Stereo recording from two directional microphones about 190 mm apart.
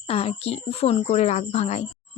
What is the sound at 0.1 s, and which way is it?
Speech, 30° left (ahead or behind).